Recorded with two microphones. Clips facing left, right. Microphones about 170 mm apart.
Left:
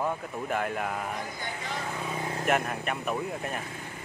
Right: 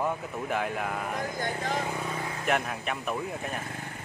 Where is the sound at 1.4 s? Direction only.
45° right (ahead or behind).